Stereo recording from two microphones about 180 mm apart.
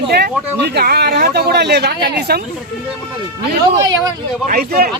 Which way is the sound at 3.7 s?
20° right (ahead or behind).